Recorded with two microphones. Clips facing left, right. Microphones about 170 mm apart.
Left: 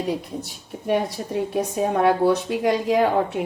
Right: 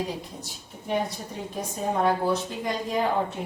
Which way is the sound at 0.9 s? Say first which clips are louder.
Left 6 dB; 70° left (ahead or behind).